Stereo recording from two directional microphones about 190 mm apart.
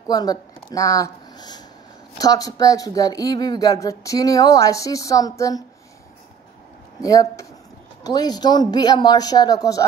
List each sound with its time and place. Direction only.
0.1 s speech: 20° left (ahead or behind)
7.0 s a man's voice: 20° left (ahead or behind)